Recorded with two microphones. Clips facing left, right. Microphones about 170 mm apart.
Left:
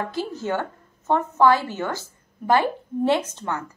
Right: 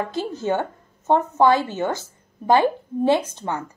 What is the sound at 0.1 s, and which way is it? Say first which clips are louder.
A woman's voice: right 3 dB; 20° right (ahead or behind).